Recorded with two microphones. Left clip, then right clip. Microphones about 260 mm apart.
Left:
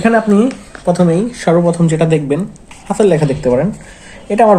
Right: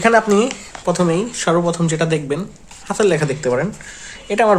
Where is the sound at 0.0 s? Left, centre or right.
Right.